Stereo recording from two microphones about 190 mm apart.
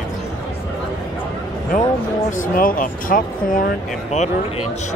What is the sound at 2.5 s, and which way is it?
Speech, 45° left (ahead or behind).